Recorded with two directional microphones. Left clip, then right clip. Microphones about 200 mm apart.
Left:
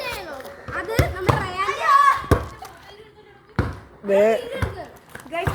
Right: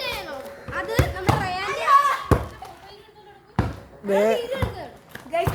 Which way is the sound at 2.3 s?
30° left (ahead or behind).